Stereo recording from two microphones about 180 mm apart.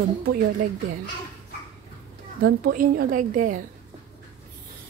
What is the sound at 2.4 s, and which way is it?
A woman's voice, 55° right (ahead or behind).